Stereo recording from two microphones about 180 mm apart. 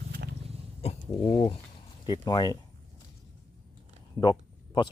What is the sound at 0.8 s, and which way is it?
Speech, 30° left (ahead or behind).